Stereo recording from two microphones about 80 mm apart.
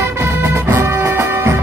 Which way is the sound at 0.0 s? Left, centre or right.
Right.